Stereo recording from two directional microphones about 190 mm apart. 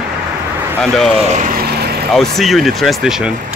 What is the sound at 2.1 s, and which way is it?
Speech, centre (ahead or behind).